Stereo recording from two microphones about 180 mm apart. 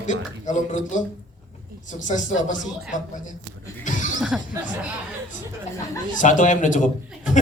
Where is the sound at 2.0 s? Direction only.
45° left (ahead or behind).